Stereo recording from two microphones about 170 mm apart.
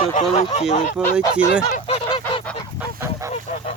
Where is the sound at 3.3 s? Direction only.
40° left (ahead or behind).